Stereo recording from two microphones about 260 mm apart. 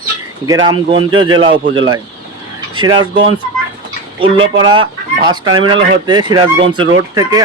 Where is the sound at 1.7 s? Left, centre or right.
Right.